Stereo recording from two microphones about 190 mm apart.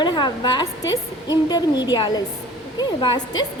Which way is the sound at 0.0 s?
25° left (ahead or behind).